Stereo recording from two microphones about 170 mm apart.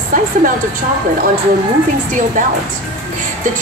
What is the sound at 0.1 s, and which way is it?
Speech, 55° right (ahead or behind).